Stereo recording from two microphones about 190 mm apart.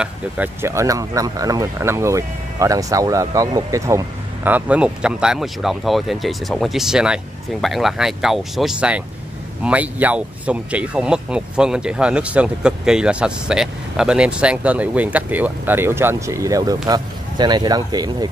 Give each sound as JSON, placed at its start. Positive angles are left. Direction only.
{"t": 0.0, "sound": "speech", "side_deg": -10}